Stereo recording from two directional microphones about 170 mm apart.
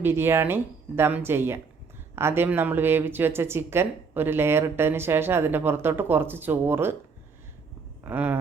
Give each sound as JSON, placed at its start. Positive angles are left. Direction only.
{"t": 0.0, "sound": "speech", "side_deg": -15}
{"t": 8.0, "sound": "speech", "side_deg": -10}